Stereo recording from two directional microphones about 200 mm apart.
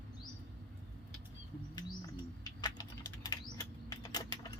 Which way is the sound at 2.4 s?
20° left (ahead or behind).